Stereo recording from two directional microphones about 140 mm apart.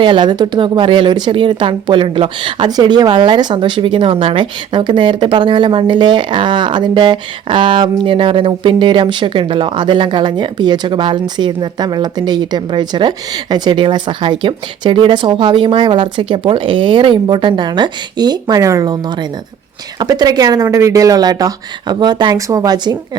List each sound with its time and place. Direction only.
0.0 s speech: 35° right (ahead or behind)